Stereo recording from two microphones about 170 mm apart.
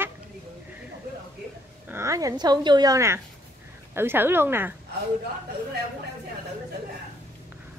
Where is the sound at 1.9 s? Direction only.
15° right (ahead or behind).